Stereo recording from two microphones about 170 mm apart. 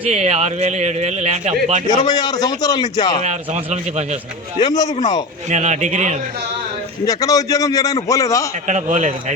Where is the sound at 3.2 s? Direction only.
40° right (ahead or behind).